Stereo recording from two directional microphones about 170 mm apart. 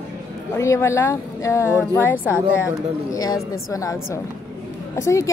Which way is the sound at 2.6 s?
20° left (ahead or behind).